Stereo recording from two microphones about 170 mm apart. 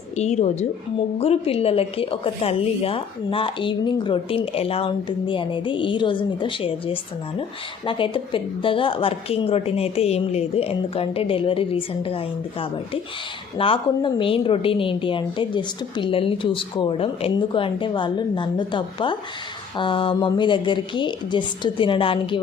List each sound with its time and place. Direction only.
0.2 s a woman's voice: 40° left (ahead or behind)